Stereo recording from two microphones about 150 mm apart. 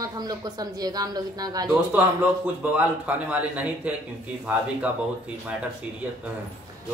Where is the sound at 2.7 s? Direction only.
10° right (ahead or behind).